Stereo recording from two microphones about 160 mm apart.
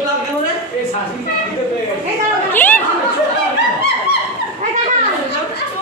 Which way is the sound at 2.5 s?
10° left (ahead or behind).